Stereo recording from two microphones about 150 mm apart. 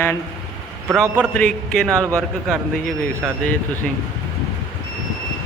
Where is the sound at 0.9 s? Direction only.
5° right (ahead or behind).